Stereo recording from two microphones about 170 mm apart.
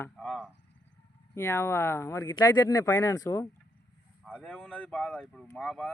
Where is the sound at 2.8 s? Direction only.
15° left (ahead or behind).